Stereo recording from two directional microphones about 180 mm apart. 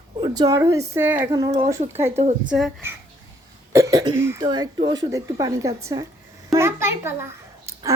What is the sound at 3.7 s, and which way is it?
A woman's voice, 20° right (ahead or behind).